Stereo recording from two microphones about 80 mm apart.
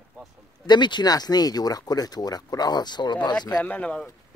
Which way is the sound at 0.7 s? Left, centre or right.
Left.